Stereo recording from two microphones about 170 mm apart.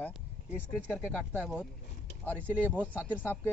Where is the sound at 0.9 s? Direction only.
5° right (ahead or behind).